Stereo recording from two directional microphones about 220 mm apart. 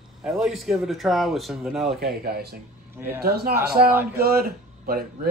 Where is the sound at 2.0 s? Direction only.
45° right (ahead or behind).